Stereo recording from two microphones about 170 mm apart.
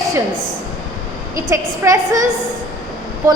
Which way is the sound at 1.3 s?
20° right (ahead or behind).